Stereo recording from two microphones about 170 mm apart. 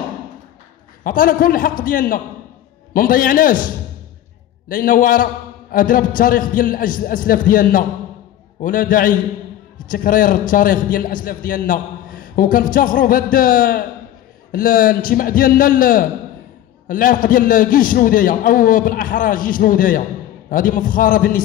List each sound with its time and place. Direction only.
1.0 s a man's voice: 55° left (ahead or behind)